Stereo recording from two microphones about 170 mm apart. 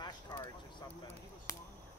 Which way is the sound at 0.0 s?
25° left (ahead or behind).